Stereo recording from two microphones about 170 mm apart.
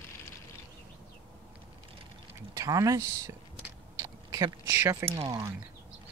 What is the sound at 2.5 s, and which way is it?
Speech, 20° right (ahead or behind).